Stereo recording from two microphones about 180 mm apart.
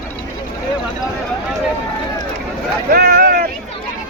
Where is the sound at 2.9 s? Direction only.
55° right (ahead or behind).